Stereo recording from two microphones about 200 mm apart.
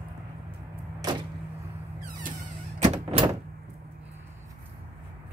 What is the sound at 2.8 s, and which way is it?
Door, 35° right (ahead or behind).